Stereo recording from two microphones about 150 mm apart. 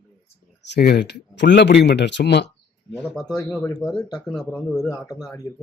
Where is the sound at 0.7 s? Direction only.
90° left.